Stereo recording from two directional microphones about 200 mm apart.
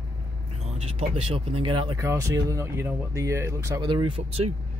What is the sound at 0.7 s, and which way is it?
Speech, 30° right (ahead or behind).